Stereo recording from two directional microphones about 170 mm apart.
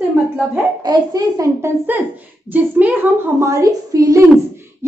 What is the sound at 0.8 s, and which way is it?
A child's voice, 20° right (ahead or behind).